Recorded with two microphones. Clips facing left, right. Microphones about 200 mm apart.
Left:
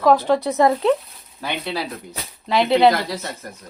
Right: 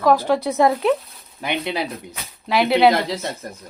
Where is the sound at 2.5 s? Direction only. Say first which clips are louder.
Even; 5° right (ahead or behind).